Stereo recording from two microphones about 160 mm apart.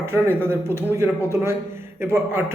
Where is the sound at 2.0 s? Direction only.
15° right (ahead or behind).